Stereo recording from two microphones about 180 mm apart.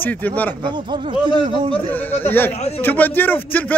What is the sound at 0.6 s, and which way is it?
Speech, 25° right (ahead or behind).